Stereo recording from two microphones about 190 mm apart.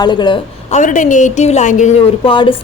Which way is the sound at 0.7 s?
40° left (ahead or behind).